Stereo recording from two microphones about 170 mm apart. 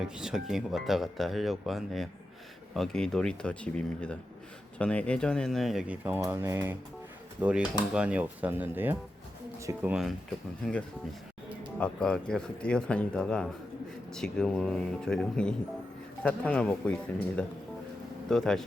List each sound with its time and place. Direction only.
0.2 s speech: 5° right (ahead or behind); by 9.8 s 20° right (ahead or behind)
11.8 s speech: 5° left (ahead or behind)